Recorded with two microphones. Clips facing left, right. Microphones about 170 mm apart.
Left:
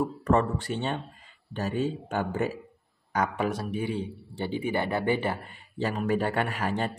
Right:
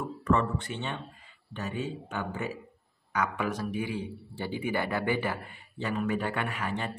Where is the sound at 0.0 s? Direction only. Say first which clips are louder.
Left 3 dB; 40° left (ahead or behind).